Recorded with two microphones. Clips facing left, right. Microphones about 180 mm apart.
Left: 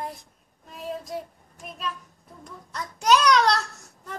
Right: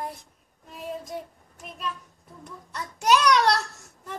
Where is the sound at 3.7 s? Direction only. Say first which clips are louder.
Even; centre (ahead or behind).